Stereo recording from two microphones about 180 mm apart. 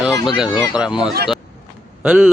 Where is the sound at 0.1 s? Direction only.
20° left (ahead or behind).